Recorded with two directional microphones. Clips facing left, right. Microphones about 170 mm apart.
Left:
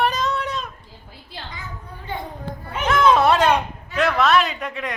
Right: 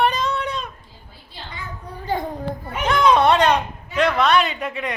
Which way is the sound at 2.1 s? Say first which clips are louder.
Right 6 dB; 35° right (ahead or behind).